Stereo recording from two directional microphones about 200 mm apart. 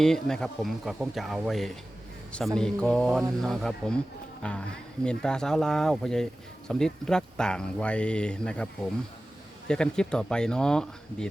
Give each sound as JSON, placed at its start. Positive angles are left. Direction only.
{"t": 0.0, "sound": "speech", "side_deg": 5}